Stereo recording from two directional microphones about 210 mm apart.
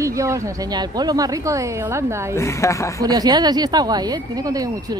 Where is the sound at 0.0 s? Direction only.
15° right (ahead or behind).